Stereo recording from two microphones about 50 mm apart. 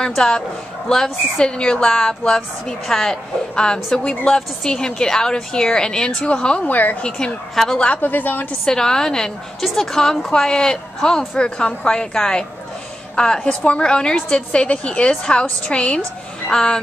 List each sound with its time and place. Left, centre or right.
0.0 s a woman's voice: centre
6.7 s a woman's voice: left
7.0 s a woman's voice: centre
7.5 s a woman's voice: centre
7.8 s a woman's voice: left
8.6 s a woman's voice: centre